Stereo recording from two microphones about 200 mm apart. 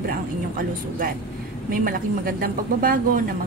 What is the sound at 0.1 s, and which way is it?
A woman's voice, 45° right (ahead or behind).